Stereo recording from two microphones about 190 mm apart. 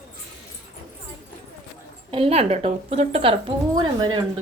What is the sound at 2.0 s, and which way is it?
A woman's voice, 30° right (ahead or behind).